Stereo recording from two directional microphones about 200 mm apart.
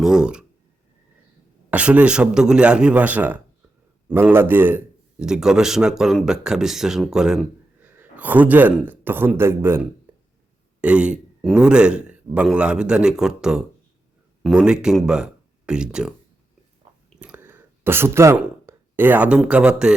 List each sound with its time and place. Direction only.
0.0 s speech: 5° right (ahead or behind)
1.7 s a man's voice: 5° right (ahead or behind)
16.8 s chewing: 25° right (ahead or behind)
17.2 s a sound: 5° right (ahead or behind)